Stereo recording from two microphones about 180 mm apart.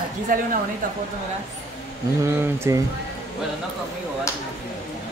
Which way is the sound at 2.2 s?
15° right (ahead or behind).